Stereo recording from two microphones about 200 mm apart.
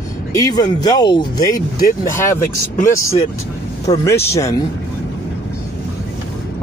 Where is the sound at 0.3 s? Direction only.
20° left (ahead or behind).